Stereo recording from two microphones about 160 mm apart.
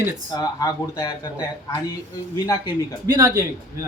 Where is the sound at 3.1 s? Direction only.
20° right (ahead or behind).